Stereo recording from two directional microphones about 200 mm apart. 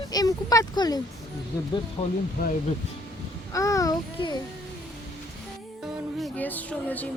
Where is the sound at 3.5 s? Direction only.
15° left (ahead or behind).